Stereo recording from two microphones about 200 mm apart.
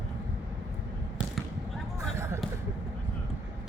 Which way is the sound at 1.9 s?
15° right (ahead or behind).